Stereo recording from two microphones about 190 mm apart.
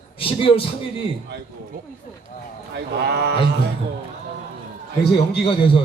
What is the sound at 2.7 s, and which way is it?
Speech, 60° right (ahead or behind).